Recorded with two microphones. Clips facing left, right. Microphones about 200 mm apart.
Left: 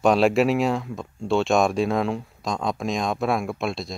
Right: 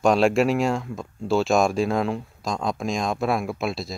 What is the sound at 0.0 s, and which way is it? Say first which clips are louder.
Speech: even; centre (ahead or behind).